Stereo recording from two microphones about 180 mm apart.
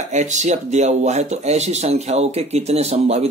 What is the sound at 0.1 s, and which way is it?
Speech, 40° right (ahead or behind).